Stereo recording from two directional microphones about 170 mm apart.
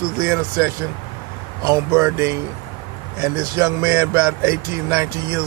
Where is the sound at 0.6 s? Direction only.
15° right (ahead or behind).